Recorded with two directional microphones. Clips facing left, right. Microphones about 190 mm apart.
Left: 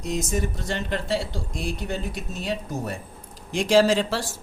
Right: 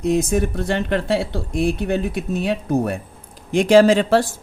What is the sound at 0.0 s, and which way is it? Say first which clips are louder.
Speech: right 8 dB; 60° right (ahead or behind).